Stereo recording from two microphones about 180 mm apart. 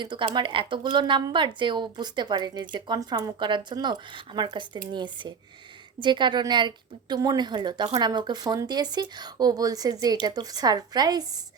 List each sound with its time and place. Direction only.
0.0 s a woman's voice: 25° right (ahead or behind)